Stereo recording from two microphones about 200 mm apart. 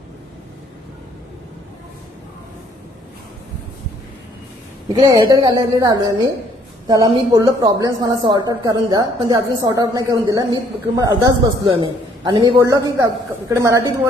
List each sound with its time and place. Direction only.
4.9 s speech: 20° right (ahead or behind)